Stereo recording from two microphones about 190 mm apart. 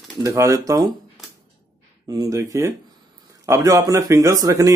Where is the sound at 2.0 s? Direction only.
15° right (ahead or behind).